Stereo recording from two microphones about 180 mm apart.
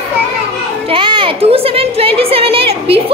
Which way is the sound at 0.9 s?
25° right (ahead or behind).